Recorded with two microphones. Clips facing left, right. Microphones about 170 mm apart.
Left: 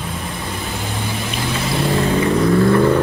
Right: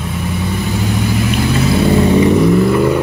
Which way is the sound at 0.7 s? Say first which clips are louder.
Right 10 dB; 5° right (ahead or behind).